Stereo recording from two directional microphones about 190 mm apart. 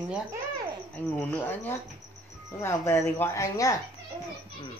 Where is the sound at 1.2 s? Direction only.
10° left (ahead or behind).